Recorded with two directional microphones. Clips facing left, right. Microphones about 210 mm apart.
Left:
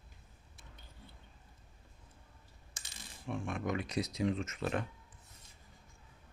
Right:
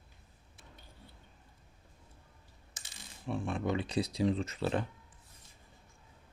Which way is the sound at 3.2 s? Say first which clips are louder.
Right 3 dB; 35° right (ahead or behind).